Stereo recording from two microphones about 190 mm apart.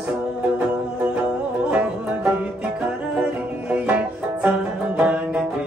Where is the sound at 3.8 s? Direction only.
10° right (ahead or behind).